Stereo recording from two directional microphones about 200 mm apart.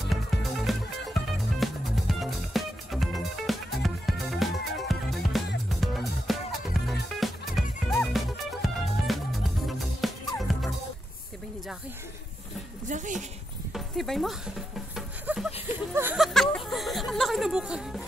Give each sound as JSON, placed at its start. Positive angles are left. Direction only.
{"t": 0.0, "sound": "music", "side_deg": 0}
{"t": 12.8, "sound": "speech", "side_deg": -40}
{"t": 13.7, "sound": "horse", "side_deg": 0}
{"t": 15.0, "sound": "music", "side_deg": 0}
{"t": 15.9, "sound": "a sound", "side_deg": -10}
{"t": 16.3, "sound": "music", "side_deg": 0}